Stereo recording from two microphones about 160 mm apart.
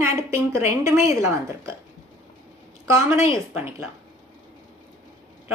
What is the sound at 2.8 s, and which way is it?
Speech, 20° right (ahead or behind).